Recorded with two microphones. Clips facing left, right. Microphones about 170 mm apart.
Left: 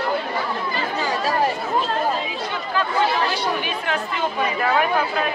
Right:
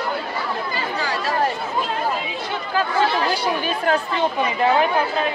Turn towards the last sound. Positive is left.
turn(degrees=-25)  # may be behind; listen again after turning